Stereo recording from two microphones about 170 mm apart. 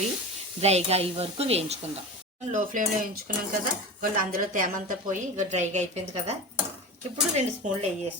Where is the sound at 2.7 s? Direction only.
50° right (ahead or behind).